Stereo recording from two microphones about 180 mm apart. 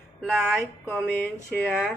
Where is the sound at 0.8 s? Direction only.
10° left (ahead or behind).